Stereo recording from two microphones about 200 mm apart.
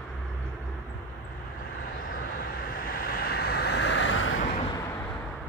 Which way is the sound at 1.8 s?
50° left (ahead or behind).